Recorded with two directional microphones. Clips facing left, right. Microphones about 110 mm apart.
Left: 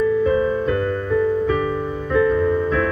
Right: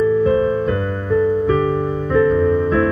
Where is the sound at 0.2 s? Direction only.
30° right (ahead or behind).